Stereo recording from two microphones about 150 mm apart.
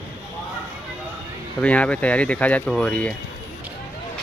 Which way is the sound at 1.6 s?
10° left (ahead or behind).